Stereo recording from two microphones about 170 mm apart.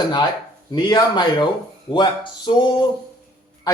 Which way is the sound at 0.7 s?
25° left (ahead or behind).